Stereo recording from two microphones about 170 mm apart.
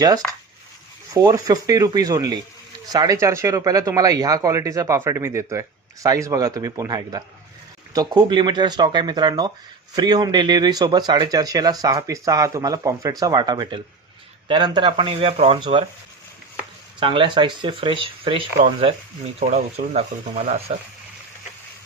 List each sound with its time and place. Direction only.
1.1 s speech: 20° right (ahead or behind)
17.0 s speech: 30° right (ahead or behind)